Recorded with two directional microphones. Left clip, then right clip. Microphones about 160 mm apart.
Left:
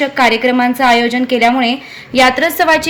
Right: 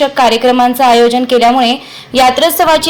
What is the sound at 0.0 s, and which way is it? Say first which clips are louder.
A woman's voice: right 3 dB; 10° right (ahead or behind).